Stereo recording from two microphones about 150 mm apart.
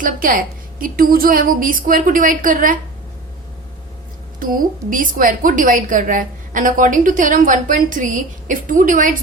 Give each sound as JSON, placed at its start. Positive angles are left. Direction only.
{"t": 0.0, "sound": "a woman's voice", "side_deg": -65}
{"t": 4.4, "sound": "a woman's voice", "side_deg": -65}